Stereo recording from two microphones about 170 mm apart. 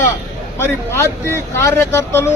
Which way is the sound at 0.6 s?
15° left (ahead or behind).